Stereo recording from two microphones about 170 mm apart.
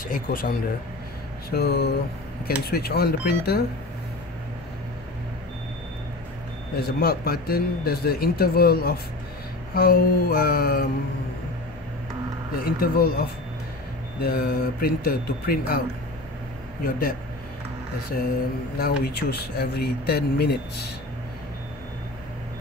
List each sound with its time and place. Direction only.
0.1 s speech: 55° left (ahead or behind)
1.5 s speech: 70° left (ahead or behind)
6.7 s speech: 65° left (ahead or behind)
12.5 s speech: 60° left (ahead or behind)
18.8 s speech: 65° left (ahead or behind)